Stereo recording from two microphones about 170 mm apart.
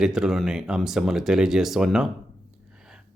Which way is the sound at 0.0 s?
5° right (ahead or behind).